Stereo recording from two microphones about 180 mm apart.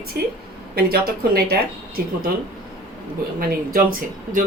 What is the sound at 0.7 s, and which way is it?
A woman's voice, 60° right (ahead or behind).